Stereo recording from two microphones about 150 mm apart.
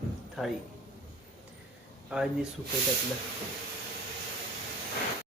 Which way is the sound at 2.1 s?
5° right (ahead or behind).